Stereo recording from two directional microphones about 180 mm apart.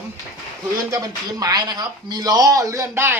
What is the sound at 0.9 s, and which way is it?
Speech, 20° right (ahead or behind).